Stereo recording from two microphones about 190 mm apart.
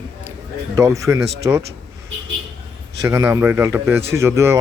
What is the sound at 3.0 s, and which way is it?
A man's voice, 15° right (ahead or behind).